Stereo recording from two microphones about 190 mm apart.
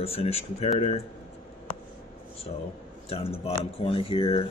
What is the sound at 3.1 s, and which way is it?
Speech, 30° left (ahead or behind).